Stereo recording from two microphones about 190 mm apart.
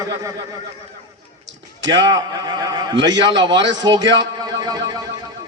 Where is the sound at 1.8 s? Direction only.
70° right (ahead or behind).